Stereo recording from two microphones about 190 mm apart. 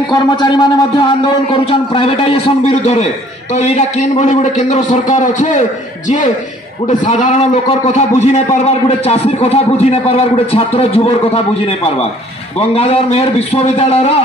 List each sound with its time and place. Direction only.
0.1 s a man's voice: 20° left (ahead or behind); by 5.6 s 40° left (ahead or behind)
6.9 s a man's voice: 40° left (ahead or behind)
12.5 s a man's voice: 30° left (ahead or behind)